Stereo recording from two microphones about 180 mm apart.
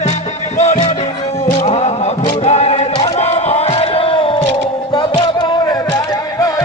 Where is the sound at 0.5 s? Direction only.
40° left (ahead or behind).